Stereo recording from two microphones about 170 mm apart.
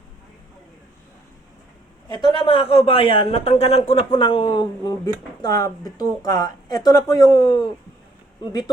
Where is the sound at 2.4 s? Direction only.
35° left (ahead or behind).